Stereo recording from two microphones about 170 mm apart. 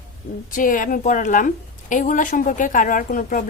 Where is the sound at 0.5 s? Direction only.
50° left (ahead or behind).